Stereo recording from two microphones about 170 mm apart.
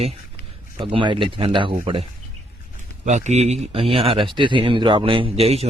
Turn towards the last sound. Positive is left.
turn(degrees=-35)  # may be behind; listen again after turning